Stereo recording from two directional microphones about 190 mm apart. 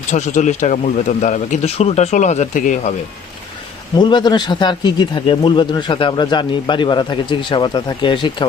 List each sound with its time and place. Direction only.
0.1 s a man's voice: 40° left (ahead or behind)
3.9 s speech: 20° left (ahead or behind)